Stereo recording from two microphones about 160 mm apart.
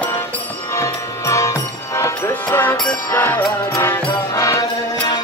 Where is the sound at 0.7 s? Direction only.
20° left (ahead or behind).